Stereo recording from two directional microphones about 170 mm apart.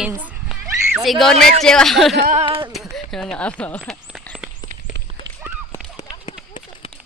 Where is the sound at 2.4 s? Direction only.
30° right (ahead or behind).